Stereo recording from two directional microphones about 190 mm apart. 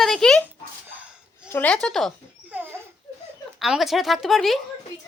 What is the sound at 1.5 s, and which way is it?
Speech, 10° left (ahead or behind).